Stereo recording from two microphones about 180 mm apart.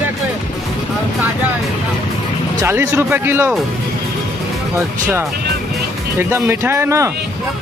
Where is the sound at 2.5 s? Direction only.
15° right (ahead or behind).